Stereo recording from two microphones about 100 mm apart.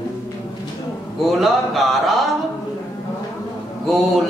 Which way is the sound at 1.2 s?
Centre (ahead or behind).